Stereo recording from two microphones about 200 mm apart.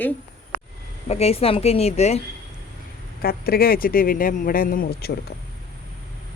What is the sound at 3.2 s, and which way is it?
Speech, 50° left (ahead or behind).